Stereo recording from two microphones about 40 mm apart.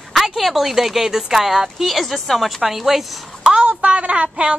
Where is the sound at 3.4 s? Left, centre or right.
Centre.